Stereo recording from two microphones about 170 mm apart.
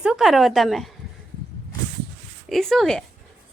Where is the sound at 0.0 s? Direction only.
5° right (ahead or behind).